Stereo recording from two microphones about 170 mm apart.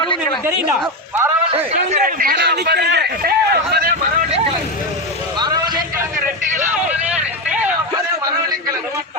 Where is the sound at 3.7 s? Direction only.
70° right (ahead or behind).